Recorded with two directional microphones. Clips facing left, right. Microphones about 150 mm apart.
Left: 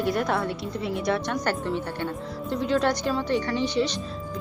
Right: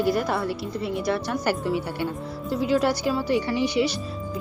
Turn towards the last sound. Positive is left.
turn(degrees=-10)  # may be behind; listen again after turning